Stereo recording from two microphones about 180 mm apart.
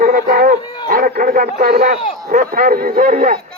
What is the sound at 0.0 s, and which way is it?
Dog, 50° right (ahead or behind).